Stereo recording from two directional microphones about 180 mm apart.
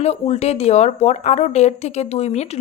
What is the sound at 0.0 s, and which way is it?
Speech, 35° left (ahead or behind).